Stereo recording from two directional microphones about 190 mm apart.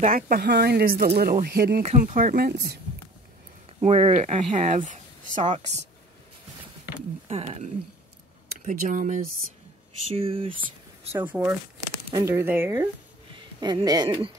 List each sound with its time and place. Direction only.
0.1 s speech: 50° right (ahead or behind)
1.8 s speech: 35° right (ahead or behind); by 2.8 s 60° right (ahead or behind)
3.8 s speech: 35° right (ahead or behind)
7.2 s speech: 30° right (ahead or behind)
10.1 s speech: 30° right (ahead or behind)
11.1 s speech: 10° right (ahead or behind)
13.3 s speech: 25° right (ahead or behind)